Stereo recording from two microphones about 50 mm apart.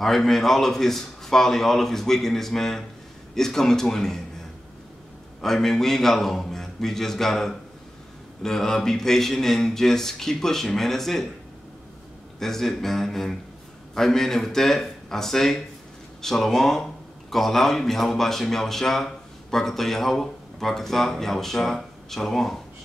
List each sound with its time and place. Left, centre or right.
0.0 s speech: centre
5.4 s speech: centre
12.4 s speech: centre